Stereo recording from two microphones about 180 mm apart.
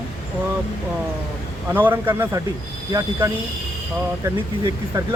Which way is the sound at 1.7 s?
10° right (ahead or behind).